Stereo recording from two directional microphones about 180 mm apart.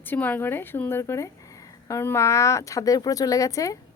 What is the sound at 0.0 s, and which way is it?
Speech, 10° left (ahead or behind).